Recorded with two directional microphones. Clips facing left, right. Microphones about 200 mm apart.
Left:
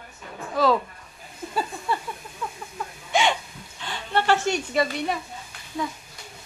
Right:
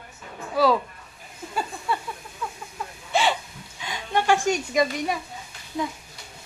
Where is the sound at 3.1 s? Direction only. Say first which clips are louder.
Even; 5° right (ahead or behind).